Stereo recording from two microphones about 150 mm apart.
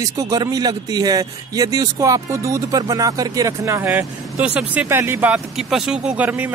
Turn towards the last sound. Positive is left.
turn(degrees=-10)  # may be behind; listen again after turning